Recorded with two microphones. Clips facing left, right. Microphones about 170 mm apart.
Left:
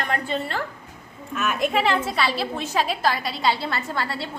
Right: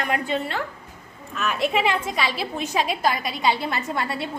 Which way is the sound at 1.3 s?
Centre (ahead or behind).